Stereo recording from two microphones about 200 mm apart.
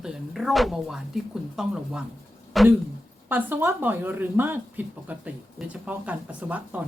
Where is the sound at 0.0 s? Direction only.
Centre (ahead or behind).